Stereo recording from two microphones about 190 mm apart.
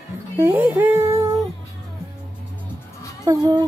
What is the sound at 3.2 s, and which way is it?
Speech, 20° right (ahead or behind).